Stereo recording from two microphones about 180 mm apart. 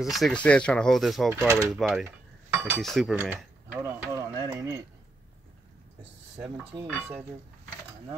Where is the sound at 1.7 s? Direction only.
5° right (ahead or behind).